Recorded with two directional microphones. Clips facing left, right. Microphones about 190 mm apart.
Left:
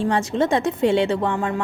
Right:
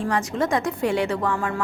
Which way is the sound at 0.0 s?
25° left (ahead or behind).